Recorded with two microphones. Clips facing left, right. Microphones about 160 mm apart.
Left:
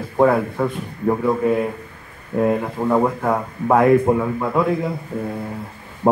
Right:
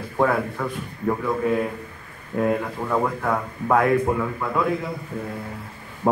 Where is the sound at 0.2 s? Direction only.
25° left (ahead or behind).